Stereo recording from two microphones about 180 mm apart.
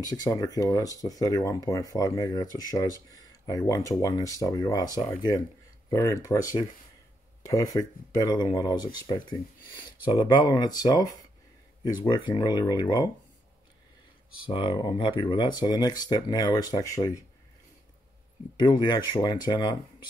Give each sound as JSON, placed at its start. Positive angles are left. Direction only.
{"t": 0.0, "sound": "speech", "side_deg": 20}
{"t": 14.5, "sound": "speech", "side_deg": 25}
{"t": 18.6, "sound": "speech", "side_deg": 25}